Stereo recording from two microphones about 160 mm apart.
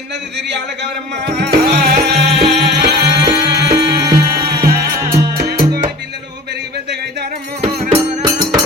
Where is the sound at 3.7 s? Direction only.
15° right (ahead or behind).